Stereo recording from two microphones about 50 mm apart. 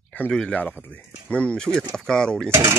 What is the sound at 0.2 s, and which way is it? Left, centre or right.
Speech, left.